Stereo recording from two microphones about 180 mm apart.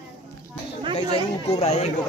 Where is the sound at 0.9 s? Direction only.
30° left (ahead or behind).